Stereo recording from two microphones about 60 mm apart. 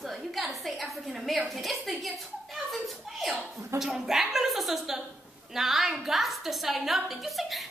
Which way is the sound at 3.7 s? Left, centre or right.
Centre.